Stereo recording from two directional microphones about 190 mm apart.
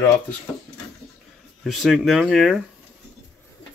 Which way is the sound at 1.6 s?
Centre (ahead or behind).